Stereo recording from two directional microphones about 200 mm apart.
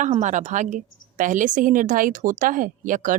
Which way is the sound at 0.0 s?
35° right (ahead or behind).